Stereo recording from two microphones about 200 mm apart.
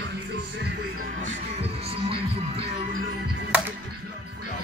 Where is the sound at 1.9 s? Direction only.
30° right (ahead or behind).